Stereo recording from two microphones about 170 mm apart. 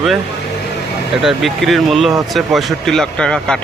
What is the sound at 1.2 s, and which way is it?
Speech, centre (ahead or behind).